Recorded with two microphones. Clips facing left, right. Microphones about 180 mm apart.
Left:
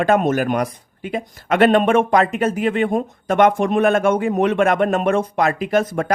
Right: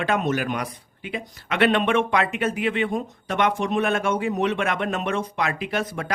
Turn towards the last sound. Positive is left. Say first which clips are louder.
# left 8 dB
turn(degrees=45)  # may be behind; listen again after turning